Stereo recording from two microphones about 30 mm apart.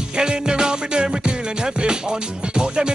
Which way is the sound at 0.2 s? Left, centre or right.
Right.